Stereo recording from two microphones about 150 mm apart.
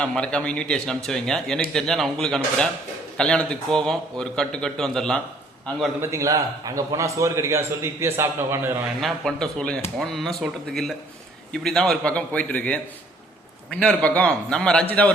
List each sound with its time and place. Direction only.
0.0 s a man's voice: 5° left (ahead or behind)
6.0 s a man's voice: 20° right (ahead or behind)
9.0 s a man's voice: 5° left (ahead or behind)